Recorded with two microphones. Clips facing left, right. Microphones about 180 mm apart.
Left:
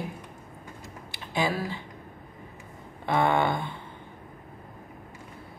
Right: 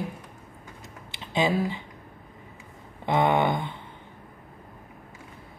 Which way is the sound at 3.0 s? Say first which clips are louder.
Right 2 dB; 20° right (ahead or behind).